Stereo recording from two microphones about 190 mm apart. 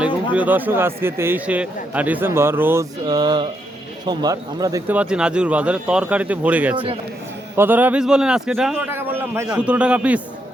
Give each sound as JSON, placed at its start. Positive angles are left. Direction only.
{"t": 0.3, "sound": "a man's voice", "side_deg": -10}
{"t": 4.9, "sound": "a man's voice", "side_deg": -5}